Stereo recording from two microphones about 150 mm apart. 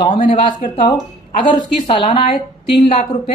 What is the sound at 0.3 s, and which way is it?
Speech, 35° left (ahead or behind).